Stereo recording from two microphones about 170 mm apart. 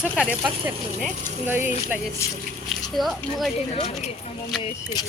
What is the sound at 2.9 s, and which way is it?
Speech, centre (ahead or behind).